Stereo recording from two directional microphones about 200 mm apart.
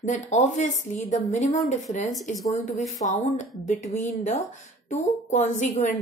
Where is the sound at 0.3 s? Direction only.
35° left (ahead or behind).